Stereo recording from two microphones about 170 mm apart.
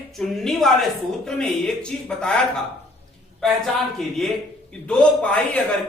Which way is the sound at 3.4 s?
5° left (ahead or behind).